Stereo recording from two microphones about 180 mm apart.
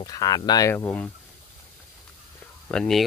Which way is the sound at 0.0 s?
20° left (ahead or behind).